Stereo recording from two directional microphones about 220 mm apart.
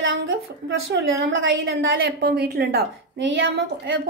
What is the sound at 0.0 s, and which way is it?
A woman's voice, 60° right (ahead or behind).